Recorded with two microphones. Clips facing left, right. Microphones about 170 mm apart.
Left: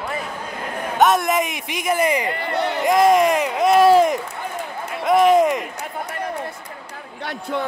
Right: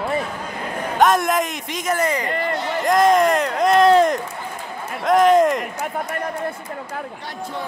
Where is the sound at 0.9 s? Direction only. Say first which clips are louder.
Even; 5° left (ahead or behind).